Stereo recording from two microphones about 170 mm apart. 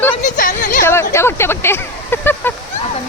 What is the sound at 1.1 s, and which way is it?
Speech, 15° left (ahead or behind).